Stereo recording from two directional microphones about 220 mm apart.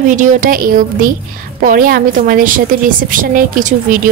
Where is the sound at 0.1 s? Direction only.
35° right (ahead or behind).